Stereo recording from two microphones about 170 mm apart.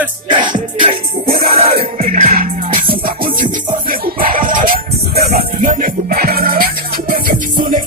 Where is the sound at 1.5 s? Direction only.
35° right (ahead or behind).